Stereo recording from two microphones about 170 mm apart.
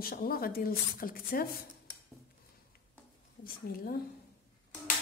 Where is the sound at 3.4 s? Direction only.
60° left (ahead or behind).